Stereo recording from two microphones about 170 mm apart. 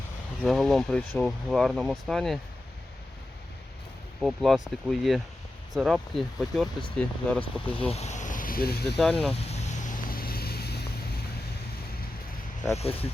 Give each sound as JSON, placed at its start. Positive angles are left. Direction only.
{"t": 0.4, "sound": "speech", "side_deg": 0}
{"t": 4.2, "sound": "speech", "side_deg": 0}
{"t": 7.6, "sound": "speech", "side_deg": 30}
{"t": 9.0, "sound": "speech", "side_deg": 5}
{"t": 9.5, "sound": "vehicle", "side_deg": 50}
{"t": 12.7, "sound": "speech", "side_deg": 35}